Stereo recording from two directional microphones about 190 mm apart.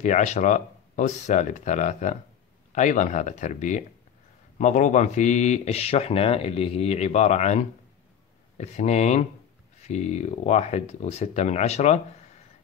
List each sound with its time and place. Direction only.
0.0 s speech: 40° left (ahead or behind)